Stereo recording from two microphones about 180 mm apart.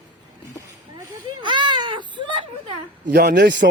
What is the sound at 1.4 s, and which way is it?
Baby cry, 25° right (ahead or behind).